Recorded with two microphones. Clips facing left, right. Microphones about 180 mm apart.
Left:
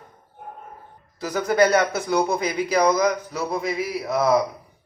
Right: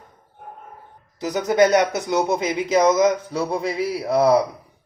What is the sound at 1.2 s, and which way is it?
A man's voice, 20° right (ahead or behind).